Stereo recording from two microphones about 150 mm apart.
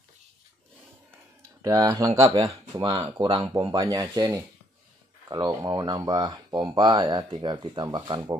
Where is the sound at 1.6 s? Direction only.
20° right (ahead or behind).